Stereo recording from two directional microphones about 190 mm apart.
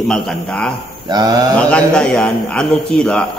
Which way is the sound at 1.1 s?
20° right (ahead or behind).